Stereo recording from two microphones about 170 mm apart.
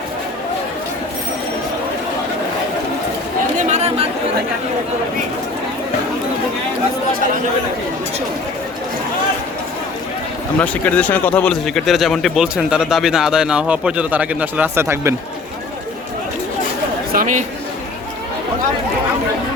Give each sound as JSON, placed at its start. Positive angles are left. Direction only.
{"t": 3.6, "sound": "chatter", "side_deg": -40}
{"t": 10.6, "sound": "a man's voice", "side_deg": 10}
{"t": 17.1, "sound": "speech", "side_deg": -50}